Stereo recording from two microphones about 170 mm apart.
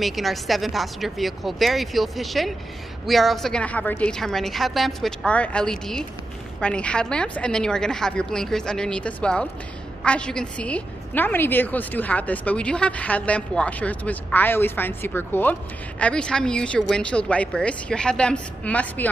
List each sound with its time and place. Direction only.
0.0 s a woman's voice: centre (ahead or behind)